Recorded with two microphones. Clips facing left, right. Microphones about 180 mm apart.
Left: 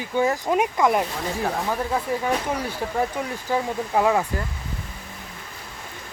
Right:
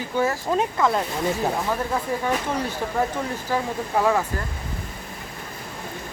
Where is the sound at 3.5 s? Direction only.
20° left (ahead or behind).